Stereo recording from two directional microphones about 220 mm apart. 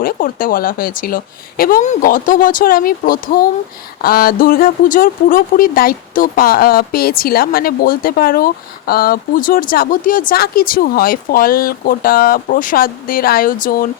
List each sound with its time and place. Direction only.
0.0 s speech: 40° left (ahead or behind)